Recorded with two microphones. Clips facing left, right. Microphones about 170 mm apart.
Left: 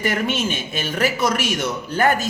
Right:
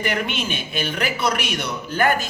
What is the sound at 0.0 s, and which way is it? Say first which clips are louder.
A man's voice: left 3 dB; 45° left (ahead or behind).